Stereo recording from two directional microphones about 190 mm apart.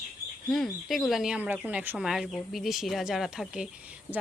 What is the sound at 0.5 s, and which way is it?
Speech, centre (ahead or behind).